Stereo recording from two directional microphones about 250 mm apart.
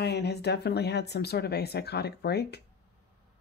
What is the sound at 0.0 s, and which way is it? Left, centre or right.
Speech, left.